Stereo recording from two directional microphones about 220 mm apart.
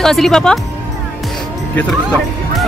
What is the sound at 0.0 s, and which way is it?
Speech, centre (ahead or behind).